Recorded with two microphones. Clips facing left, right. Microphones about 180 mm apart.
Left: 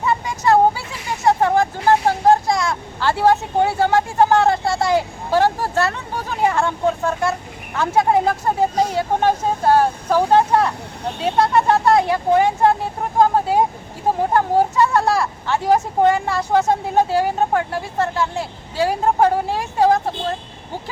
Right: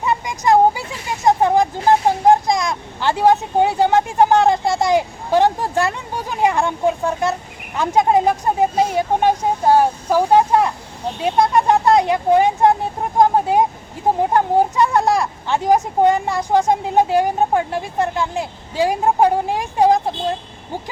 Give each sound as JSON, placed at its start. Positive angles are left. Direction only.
{"t": 0.0, "sound": "a sound", "side_deg": -15}
{"t": 7.8, "sound": "speech", "side_deg": -15}
{"t": 11.2, "sound": "vehicle", "side_deg": -15}
{"t": 14.2, "sound": "speech", "side_deg": -15}